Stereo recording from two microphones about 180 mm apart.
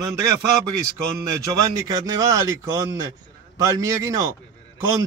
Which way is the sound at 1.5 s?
20° right (ahead or behind).